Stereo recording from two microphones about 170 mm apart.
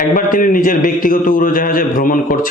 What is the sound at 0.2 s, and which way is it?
Speech, 55° left (ahead or behind).